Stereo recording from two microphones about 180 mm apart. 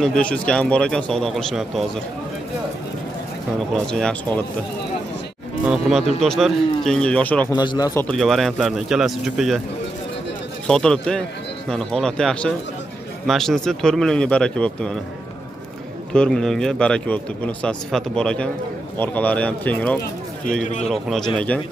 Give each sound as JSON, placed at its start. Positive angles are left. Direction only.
{"t": 0.0, "sound": "a man's voice", "side_deg": 5}
{"t": 3.7, "sound": "a man's voice", "side_deg": 5}
{"t": 5.7, "sound": "a man's voice", "side_deg": 0}
{"t": 7.5, "sound": "speech", "side_deg": 25}
{"t": 8.2, "sound": "a man's voice", "side_deg": 0}
{"t": 10.7, "sound": "a man's voice", "side_deg": 5}
{"t": 16.1, "sound": "a man's voice", "side_deg": 5}